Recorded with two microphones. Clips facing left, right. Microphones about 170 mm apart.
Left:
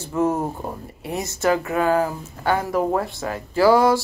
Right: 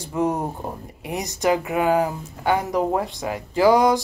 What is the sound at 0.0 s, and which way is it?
Speech, 15° right (ahead or behind).